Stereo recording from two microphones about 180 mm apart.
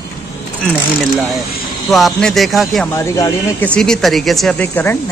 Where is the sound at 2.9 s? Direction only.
15° left (ahead or behind).